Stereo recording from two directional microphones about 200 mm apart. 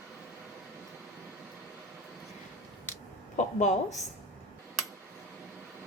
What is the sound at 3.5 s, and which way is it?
Speech, 35° left (ahead or behind).